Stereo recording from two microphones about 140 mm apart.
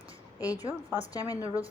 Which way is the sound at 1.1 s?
25° left (ahead or behind).